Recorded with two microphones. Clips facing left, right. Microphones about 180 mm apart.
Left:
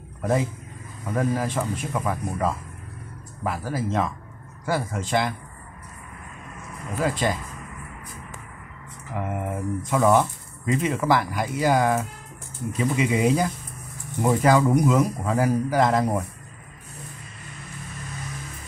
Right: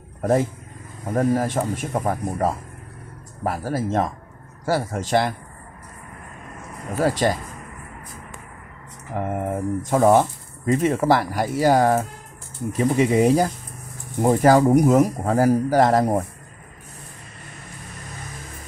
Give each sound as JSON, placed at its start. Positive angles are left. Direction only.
{"t": 0.2, "sound": "speech", "side_deg": -45}
{"t": 7.0, "sound": "speech", "side_deg": -35}
{"t": 9.1, "sound": "speech", "side_deg": -40}